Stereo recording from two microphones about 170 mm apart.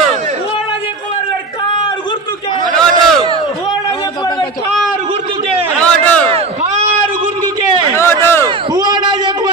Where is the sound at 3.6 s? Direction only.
25° left (ahead or behind).